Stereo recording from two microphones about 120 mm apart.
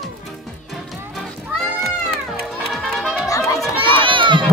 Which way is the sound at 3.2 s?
25° left (ahead or behind).